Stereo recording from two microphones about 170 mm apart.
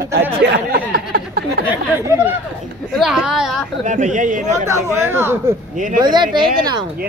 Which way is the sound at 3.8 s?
45° right (ahead or behind).